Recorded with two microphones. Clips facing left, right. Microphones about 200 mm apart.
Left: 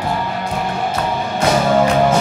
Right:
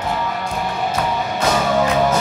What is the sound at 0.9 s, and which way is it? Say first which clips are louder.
Music: left 1 dB; 30° left (ahead or behind).